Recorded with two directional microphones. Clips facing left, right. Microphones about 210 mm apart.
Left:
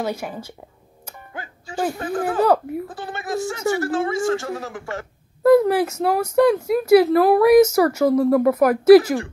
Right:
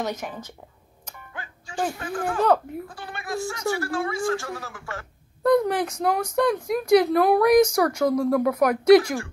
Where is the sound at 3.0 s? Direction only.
25° left (ahead or behind).